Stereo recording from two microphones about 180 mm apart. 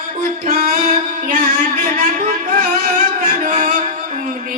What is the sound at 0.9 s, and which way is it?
Music, 45° right (ahead or behind).